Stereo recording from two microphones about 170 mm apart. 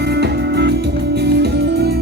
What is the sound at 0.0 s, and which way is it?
Music, 75° right (ahead or behind).